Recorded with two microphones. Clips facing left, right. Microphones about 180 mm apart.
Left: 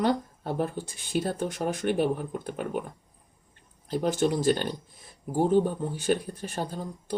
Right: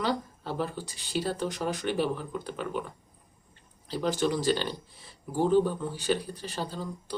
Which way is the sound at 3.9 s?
50° left (ahead or behind).